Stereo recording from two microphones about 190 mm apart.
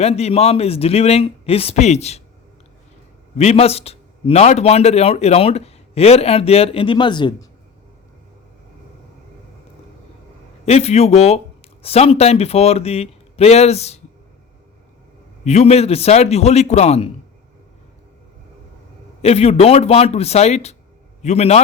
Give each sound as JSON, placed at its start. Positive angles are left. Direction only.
{"t": 0.0, "sound": "a man's voice", "side_deg": 35}
{"t": 3.3, "sound": "a man's voice", "side_deg": 35}
{"t": 10.7, "sound": "a man's voice", "side_deg": 35}
{"t": 15.4, "sound": "a man's voice", "side_deg": 35}
{"t": 19.2, "sound": "a man's voice", "side_deg": 30}